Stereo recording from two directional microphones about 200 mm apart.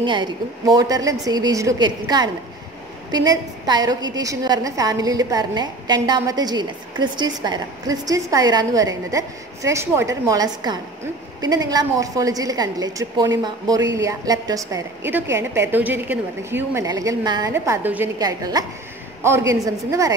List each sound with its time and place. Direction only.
0.0 s a woman's voice: 20° right (ahead or behind)